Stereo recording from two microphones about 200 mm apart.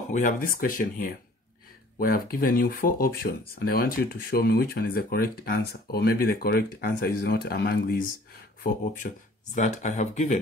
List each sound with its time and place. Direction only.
0.1 s speech: 40° left (ahead or behind)
8.6 s speech: 40° left (ahead or behind)